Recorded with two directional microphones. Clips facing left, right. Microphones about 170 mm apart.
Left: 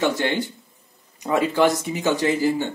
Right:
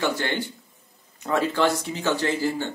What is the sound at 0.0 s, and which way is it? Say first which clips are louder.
A man's voice: left 4 dB; 15° left (ahead or behind).